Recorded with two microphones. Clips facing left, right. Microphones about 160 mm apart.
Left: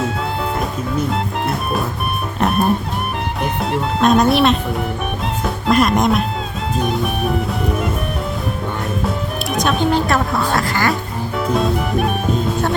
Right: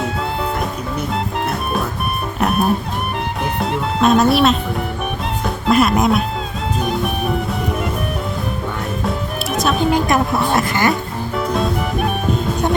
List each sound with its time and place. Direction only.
1.1 s music: centre (ahead or behind)
5.6 s music: 5° right (ahead or behind)
9.0 s music: centre (ahead or behind)
10.1 s music: 20° right (ahead or behind)
11.3 s music: centre (ahead or behind)